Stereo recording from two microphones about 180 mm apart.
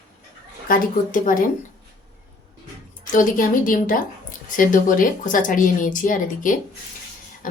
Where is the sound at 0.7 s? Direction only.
50° left (ahead or behind).